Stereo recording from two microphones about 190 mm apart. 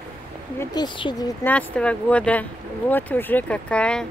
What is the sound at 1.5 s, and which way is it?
Speech, 5° left (ahead or behind).